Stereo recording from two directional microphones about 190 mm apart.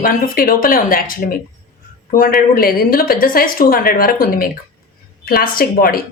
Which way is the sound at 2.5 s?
50° left (ahead or behind).